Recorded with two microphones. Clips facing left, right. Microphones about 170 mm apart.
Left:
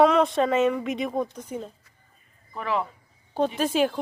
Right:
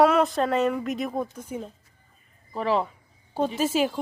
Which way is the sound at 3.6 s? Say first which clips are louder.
Even; 5° right (ahead or behind).